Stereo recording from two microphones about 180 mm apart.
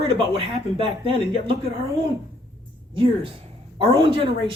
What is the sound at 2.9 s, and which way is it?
Speech, 30° right (ahead or behind).